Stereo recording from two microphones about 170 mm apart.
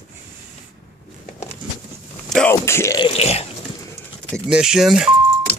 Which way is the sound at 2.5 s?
15° left (ahead or behind).